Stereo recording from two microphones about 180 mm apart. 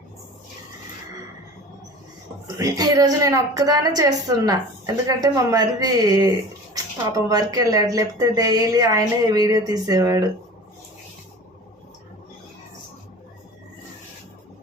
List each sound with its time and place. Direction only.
2.6 s speech: 20° right (ahead or behind)